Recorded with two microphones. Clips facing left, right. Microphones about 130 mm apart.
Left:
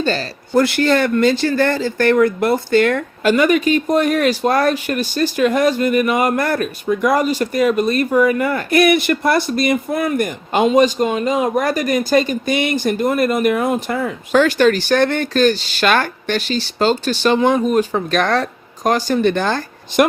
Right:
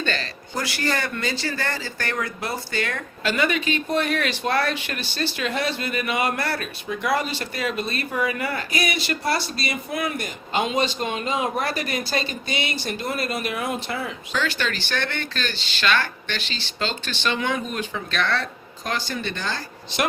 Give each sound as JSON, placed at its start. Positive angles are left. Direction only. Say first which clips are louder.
{"t": 0.0, "sound": "speech", "louder": "left 8 dB", "side_deg": 35}
{"t": 0.5, "sound": "speech", "louder": "left 12 dB", "side_deg": 60}